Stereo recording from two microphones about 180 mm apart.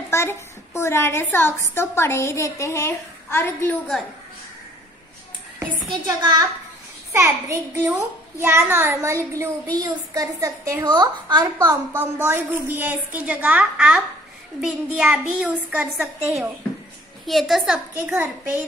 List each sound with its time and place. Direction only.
0.1 s a woman's voice: 15° left (ahead or behind)
5.9 s a child's voice: 25° right (ahead or behind)